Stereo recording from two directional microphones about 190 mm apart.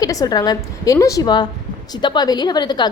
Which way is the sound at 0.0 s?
20° left (ahead or behind).